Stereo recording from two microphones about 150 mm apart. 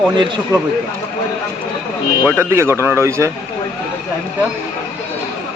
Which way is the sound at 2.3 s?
15° right (ahead or behind).